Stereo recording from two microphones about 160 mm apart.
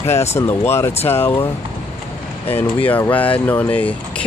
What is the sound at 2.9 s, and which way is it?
Speech, 10° left (ahead or behind).